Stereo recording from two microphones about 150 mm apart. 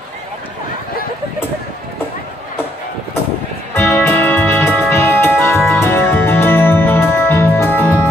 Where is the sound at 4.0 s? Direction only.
15° left (ahead or behind).